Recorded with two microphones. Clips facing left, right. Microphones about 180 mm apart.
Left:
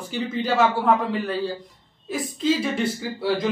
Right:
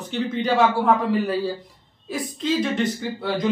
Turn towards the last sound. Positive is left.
turn(degrees=5)  # may be behind; listen again after turning